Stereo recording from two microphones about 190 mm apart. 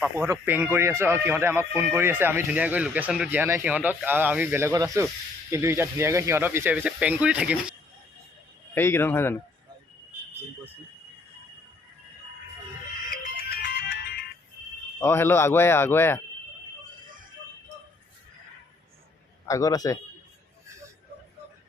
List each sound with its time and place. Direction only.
0.0 s speech: 10° right (ahead or behind)
8.7 s speech: 10° left (ahead or behind)
13.1 s music: 50° left (ahead or behind)
15.0 s speech: 10° left (ahead or behind)
19.5 s speech: 15° left (ahead or behind)